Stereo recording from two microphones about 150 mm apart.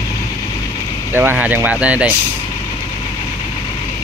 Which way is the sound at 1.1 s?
10° right (ahead or behind).